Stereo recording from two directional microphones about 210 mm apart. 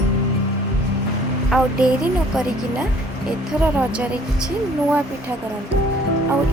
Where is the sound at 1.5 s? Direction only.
5° right (ahead or behind).